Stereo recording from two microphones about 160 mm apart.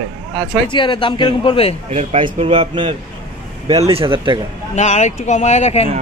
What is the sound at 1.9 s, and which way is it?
A man's voice, 45° right (ahead or behind).